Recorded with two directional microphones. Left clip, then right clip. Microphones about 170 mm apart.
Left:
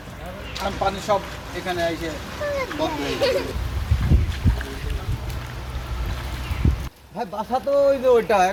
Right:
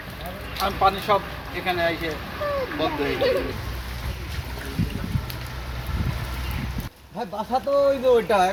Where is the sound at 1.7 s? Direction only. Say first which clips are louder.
Right 1 dB; 30° left (ahead or behind).